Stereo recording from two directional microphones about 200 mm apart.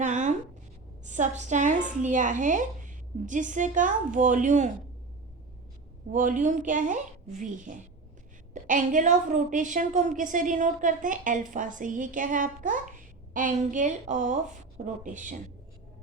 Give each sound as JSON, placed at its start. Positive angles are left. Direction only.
{"t": 0.0, "sound": "a sound", "side_deg": -40}
{"t": 1.0, "sound": "a woman's voice", "side_deg": -35}
{"t": 6.1, "sound": "a woman's voice", "side_deg": -40}